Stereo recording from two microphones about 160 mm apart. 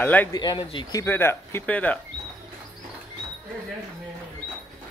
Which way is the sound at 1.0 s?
15° left (ahead or behind).